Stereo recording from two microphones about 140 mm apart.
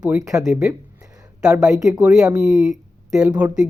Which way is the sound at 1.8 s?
25° right (ahead or behind).